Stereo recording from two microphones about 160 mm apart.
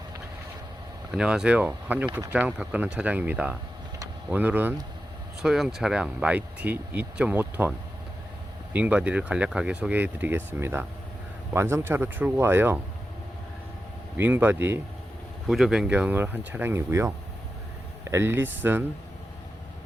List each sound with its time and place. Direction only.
1.1 s speech: 5° right (ahead or behind)
8.7 s speech: 10° right (ahead or behind)
14.2 s speech: 10° right (ahead or behind)
15.4 s speech: centre (ahead or behind)